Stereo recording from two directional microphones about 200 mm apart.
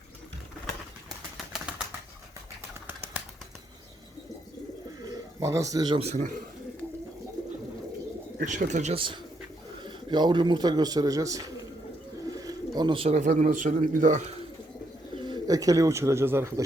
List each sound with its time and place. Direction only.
1.4 s bird flight: 5° right (ahead or behind)
5.0 s a man's voice: 15° right (ahead or behind); by 6.3 s 35° right (ahead or behind)
8.4 s a man's voice: 35° right (ahead or behind)
15.2 s speech: 20° right (ahead or behind)